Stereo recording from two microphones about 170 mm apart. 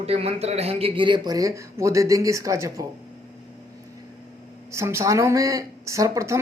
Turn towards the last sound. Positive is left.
turn(degrees=-15)  # may be behind; listen again after turning